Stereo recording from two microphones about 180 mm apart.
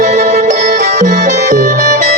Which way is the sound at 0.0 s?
40° right (ahead or behind).